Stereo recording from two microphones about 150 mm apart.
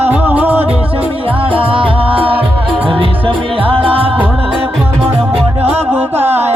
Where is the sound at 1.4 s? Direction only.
35° right (ahead or behind).